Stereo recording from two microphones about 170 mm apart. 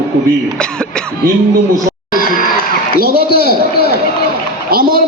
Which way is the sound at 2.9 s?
60° right (ahead or behind).